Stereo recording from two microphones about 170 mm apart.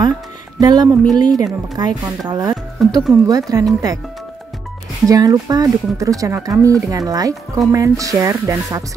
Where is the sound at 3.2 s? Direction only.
20° right (ahead or behind).